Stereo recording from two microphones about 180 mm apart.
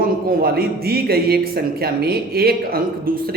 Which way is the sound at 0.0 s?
55° right (ahead or behind).